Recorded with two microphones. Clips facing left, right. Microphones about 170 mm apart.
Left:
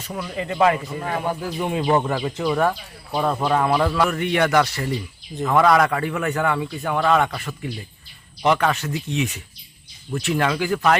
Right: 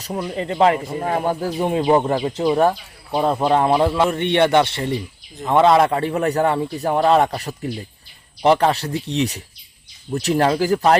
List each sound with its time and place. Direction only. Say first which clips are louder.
0.0 s speech: right 4 dB; 30° right (ahead or behind)
0.8 s a man's voice: right 4 dB; 40° right (ahead or behind)